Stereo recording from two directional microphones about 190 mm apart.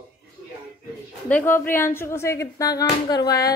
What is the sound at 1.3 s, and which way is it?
Speech, 10° left (ahead or behind).